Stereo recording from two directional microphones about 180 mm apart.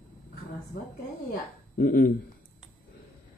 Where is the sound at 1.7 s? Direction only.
50° left (ahead or behind).